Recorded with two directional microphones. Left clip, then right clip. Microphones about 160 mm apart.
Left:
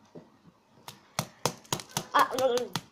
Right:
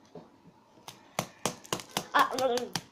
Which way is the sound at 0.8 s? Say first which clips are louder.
Even; centre (ahead or behind).